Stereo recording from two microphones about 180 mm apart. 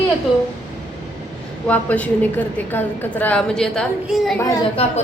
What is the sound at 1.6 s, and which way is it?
A woman's voice, 10° left (ahead or behind).